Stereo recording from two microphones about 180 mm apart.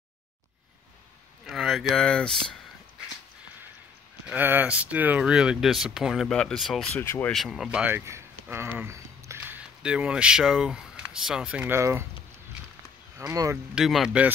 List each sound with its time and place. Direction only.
1.4 s a sound: centre (ahead or behind)
4.3 s speech: 10° right (ahead or behind)
7.0 s speech: 10° left (ahead or behind)
7.3 s speech: centre (ahead or behind)
13.3 s speech: 20° right (ahead or behind)
13.7 s speech: centre (ahead or behind)